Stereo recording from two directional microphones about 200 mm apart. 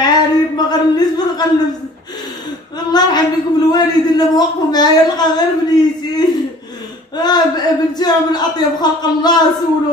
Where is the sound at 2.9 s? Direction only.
20° left (ahead or behind).